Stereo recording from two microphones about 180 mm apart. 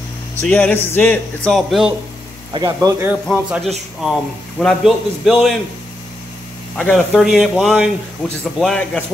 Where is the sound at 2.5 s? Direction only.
20° right (ahead or behind).